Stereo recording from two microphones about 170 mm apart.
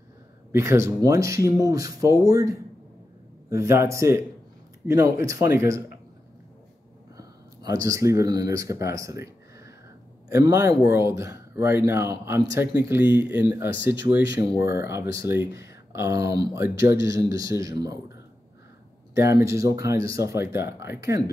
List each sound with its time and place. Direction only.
0.5 s speech: 15° right (ahead or behind)
7.2 s speech: 20° right (ahead or behind)
19.4 s speech: 20° right (ahead or behind)